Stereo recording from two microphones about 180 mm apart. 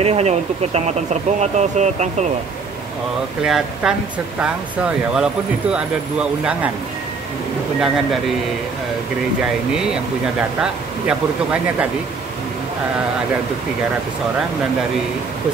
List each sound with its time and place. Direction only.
0.0 s speech: 35° right (ahead or behind)
3.4 s speech: 5° right (ahead or behind)
7.8 s speech: centre (ahead or behind)
10.6 s speech: 5° right (ahead or behind)